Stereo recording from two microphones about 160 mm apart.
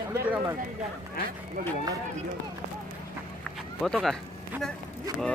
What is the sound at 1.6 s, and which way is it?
Speech, 60° right (ahead or behind).